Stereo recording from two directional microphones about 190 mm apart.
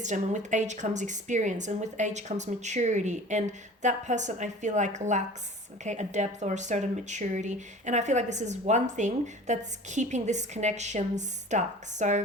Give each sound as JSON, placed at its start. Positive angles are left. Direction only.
{"t": 0.0, "sound": "speech", "side_deg": -40}